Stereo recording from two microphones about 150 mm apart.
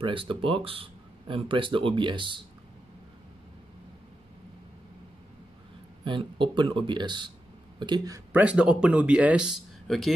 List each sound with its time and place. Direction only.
0.0 s speech: 35° right (ahead or behind)
6.0 s speech: 35° right (ahead or behind)
8.3 s speech: 10° right (ahead or behind)